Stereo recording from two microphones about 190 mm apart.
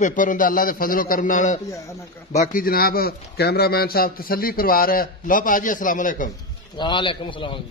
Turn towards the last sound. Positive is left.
turn(degrees=25)  # may be behind; listen again after turning